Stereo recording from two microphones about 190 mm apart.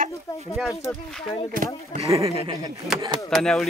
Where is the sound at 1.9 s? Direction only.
45° right (ahead or behind).